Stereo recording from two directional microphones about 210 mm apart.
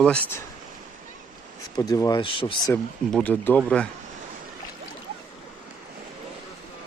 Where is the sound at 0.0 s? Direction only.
5° left (ahead or behind).